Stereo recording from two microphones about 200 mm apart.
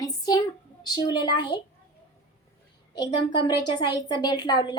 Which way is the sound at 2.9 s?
20° left (ahead or behind).